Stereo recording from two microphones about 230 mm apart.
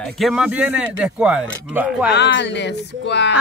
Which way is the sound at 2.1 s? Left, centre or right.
Left.